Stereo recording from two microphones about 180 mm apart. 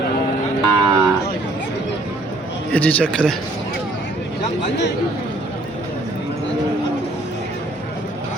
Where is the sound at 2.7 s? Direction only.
10° left (ahead or behind).